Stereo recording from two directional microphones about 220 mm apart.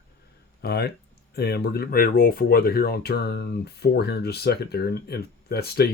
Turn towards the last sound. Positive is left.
turn(degrees=45)  # may be behind; listen again after turning